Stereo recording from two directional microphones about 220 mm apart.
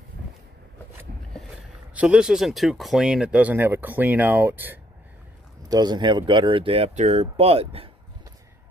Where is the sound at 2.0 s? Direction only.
5° right (ahead or behind).